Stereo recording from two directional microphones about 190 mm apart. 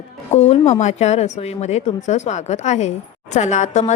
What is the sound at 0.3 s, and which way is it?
Speech, 35° left (ahead or behind).